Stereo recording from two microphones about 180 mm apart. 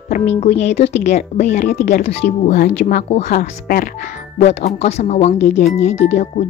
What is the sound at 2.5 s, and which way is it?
A woman's voice, 55° left (ahead or behind).